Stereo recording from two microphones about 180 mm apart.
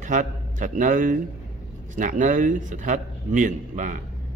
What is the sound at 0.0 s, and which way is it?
A man's voice, 45° right (ahead or behind).